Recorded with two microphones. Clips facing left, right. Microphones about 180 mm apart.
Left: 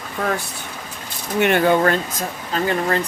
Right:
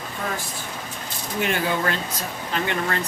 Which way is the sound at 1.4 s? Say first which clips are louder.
Left 8 dB; 65° left (ahead or behind).